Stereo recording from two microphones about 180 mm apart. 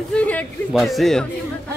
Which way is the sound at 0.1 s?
5° left (ahead or behind).